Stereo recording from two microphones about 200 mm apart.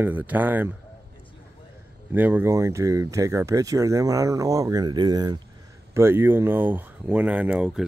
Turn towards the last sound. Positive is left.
turn(degrees=-5)  # may be behind; listen again after turning